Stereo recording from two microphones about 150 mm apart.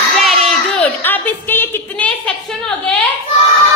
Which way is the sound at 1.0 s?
15° left (ahead or behind).